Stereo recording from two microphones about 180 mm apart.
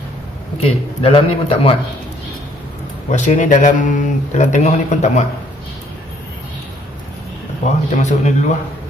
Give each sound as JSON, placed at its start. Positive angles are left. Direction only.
{"t": 0.6, "sound": "a man's voice", "side_deg": 30}
{"t": 3.1, "sound": "speech", "side_deg": 45}
{"t": 7.9, "sound": "a man's voice", "side_deg": 40}